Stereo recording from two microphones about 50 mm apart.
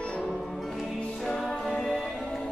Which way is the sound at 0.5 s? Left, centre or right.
Centre.